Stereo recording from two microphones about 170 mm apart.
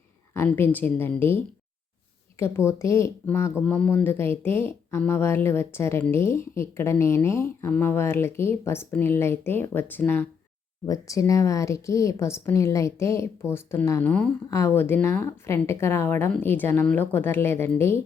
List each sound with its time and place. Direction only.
0.3 s speech: 10° left (ahead or behind)
2.4 s speech: 15° left (ahead or behind)